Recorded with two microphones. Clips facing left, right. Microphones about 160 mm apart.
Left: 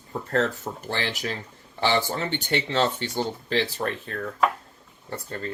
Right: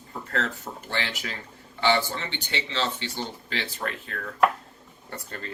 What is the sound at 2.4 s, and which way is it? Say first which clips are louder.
Speech: left 6 dB; 50° left (ahead or behind).